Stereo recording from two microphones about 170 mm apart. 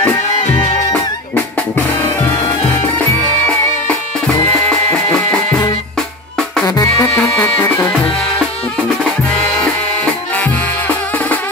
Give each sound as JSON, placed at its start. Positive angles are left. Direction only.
{"t": 6.6, "sound": "music", "side_deg": 20}
{"t": 7.2, "sound": "music", "side_deg": 10}